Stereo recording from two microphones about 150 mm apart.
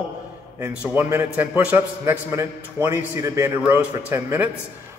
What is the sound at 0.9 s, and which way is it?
A man's voice, 15° right (ahead or behind).